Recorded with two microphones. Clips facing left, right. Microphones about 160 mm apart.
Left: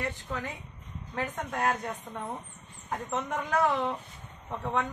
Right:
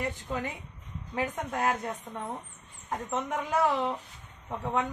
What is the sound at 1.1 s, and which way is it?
A woman's voice, 10° right (ahead or behind).